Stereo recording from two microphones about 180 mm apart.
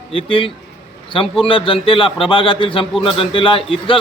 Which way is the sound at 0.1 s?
30° left (ahead or behind).